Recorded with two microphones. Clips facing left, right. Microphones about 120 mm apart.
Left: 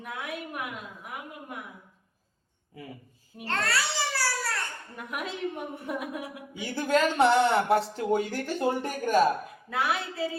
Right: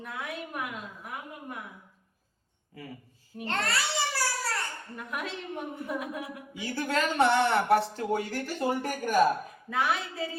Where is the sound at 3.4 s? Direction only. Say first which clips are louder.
Left 1 dB; 20° right (ahead or behind).